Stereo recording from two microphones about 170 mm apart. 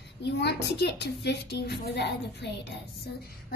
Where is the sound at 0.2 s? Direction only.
80° left.